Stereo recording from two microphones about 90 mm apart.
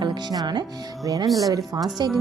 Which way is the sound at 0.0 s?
55° right (ahead or behind).